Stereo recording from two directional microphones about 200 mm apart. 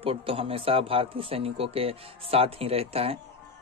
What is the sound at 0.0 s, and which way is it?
Speech, 25° right (ahead or behind).